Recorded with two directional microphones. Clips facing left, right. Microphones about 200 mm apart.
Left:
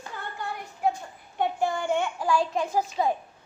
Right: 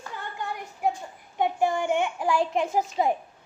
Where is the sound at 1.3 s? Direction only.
20° right (ahead or behind).